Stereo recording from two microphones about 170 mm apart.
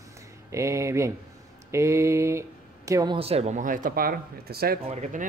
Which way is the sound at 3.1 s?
35° right (ahead or behind).